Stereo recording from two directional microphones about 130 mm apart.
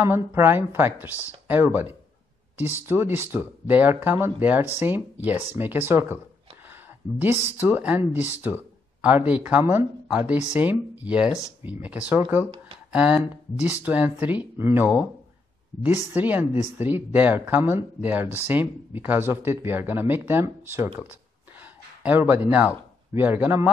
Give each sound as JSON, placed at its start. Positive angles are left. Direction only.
{"t": 0.0, "sound": "speech", "side_deg": -15}
{"t": 16.1, "sound": "speech", "side_deg": -15}
{"t": 21.1, "sound": "a sound", "side_deg": -15}
{"t": 23.1, "sound": "speech", "side_deg": -15}